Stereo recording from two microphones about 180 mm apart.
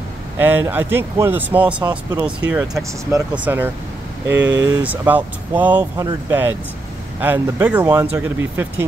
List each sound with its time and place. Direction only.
0.4 s speech: 10° right (ahead or behind)
4.3 s speech: 90° right
4.7 s speech: 10° right (ahead or behind)
7.2 s speech: 15° right (ahead or behind)